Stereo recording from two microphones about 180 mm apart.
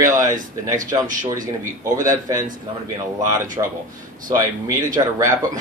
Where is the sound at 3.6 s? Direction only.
25° right (ahead or behind).